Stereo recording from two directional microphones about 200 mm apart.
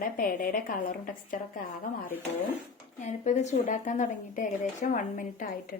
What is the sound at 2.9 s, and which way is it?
Speech, 35° left (ahead or behind).